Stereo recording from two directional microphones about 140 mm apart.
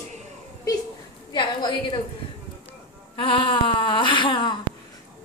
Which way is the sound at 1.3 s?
35° left (ahead or behind).